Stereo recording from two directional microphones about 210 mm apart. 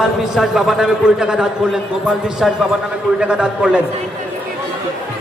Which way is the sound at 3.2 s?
5° right (ahead or behind).